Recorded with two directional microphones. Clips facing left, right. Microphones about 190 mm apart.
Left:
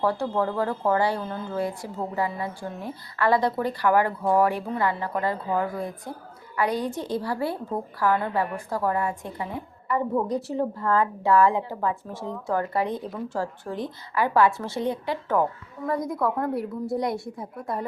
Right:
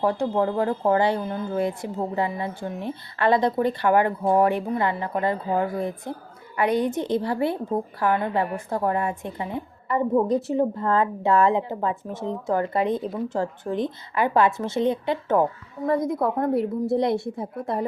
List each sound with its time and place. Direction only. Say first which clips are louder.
0.0 s speech: right 2 dB; 20° right (ahead or behind)